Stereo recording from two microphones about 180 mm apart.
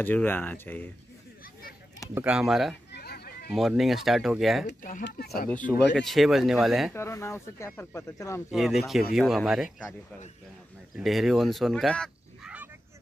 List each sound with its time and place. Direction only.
0.0 s speech: 10° left (ahead or behind)
2.1 s speech: 5° right (ahead or behind)
2.9 s a sound: 60° left (ahead or behind)
3.5 s speech: centre (ahead or behind)
5.0 s speech: 60° left (ahead or behind)
5.8 s speech: 5° left (ahead or behind)
6.9 s speech: 15° left (ahead or behind)
8.5 s speech: centre (ahead or behind)
11.0 s speech: centre (ahead or behind)